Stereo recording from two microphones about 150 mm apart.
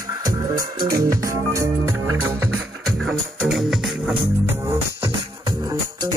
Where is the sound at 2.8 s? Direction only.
Centre (ahead or behind).